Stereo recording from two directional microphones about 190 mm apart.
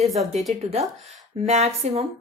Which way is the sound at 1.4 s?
35° right (ahead or behind).